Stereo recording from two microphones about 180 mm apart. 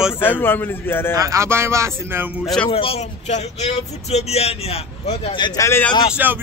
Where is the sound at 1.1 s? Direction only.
20° right (ahead or behind).